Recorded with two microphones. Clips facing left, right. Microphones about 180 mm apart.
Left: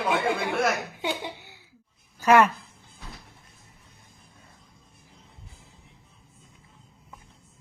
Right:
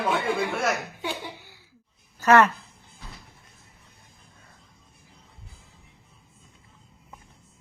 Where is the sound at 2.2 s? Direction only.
10° left (ahead or behind).